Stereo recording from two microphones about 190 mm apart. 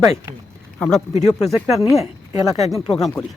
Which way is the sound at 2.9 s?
Centre (ahead or behind).